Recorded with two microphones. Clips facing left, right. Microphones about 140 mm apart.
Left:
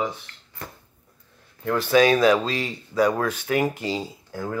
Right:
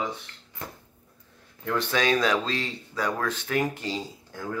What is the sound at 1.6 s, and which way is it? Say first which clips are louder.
Speech: left 7 dB; 5° left (ahead or behind).